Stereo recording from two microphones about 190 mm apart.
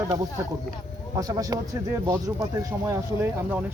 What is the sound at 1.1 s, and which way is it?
Speech, 15° right (ahead or behind).